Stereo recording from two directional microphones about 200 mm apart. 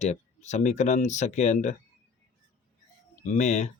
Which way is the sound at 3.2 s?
35° left (ahead or behind).